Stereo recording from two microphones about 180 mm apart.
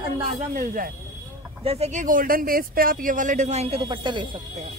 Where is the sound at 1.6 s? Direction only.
35° right (ahead or behind).